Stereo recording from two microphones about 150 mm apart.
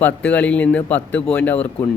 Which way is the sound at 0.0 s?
10° left (ahead or behind).